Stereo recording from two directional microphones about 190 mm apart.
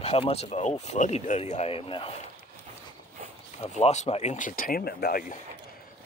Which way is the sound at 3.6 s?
35° left (ahead or behind).